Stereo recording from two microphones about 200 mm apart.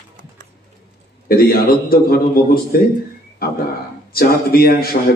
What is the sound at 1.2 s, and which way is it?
A man's voice, 50° left (ahead or behind).